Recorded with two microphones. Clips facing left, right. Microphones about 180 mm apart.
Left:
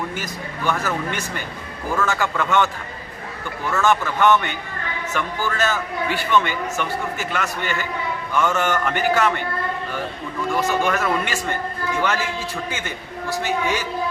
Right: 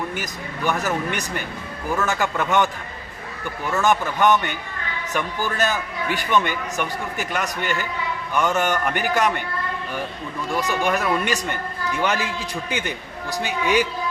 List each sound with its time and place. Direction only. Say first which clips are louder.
0.2 s a man's voice: even; 15° right (ahead or behind)
3.8 s a man's voice: left 1 dB; 15° right (ahead or behind)
10.6 s a man's voice: left 1 dB; 15° right (ahead or behind)
13.3 s a man's voice: right 2 dB; 15° right (ahead or behind)